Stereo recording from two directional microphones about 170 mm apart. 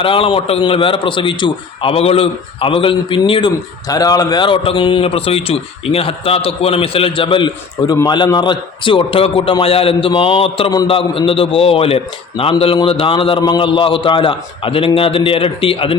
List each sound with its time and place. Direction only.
0.0 s a man's voice: 30° left (ahead or behind)